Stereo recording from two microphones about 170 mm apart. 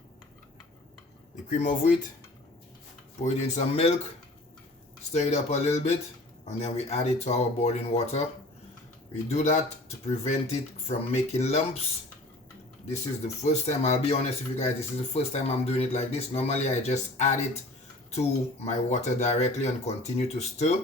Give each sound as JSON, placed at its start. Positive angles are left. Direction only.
{"t": 1.5, "sound": "speech", "side_deg": 45}
{"t": 3.2, "sound": "speech", "side_deg": 40}
{"t": 5.1, "sound": "speech", "side_deg": 40}
{"t": 9.3, "sound": "speech", "side_deg": 40}
{"t": 13.2, "sound": "speech", "side_deg": 40}